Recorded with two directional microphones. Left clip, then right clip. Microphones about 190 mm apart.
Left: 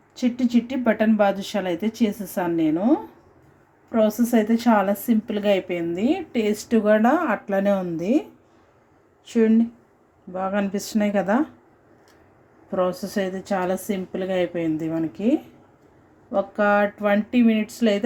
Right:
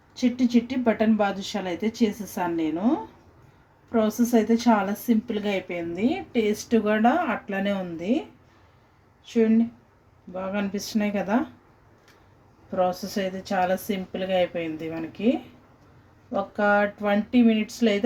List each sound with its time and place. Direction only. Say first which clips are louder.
0.2 s speech: left 1 dB; 15° left (ahead or behind)
9.3 s speech: left 2 dB; 20° left (ahead or behind)
12.7 s speech: left 1 dB; 20° left (ahead or behind)
16.3 s speech: left 2 dB; 20° left (ahead or behind)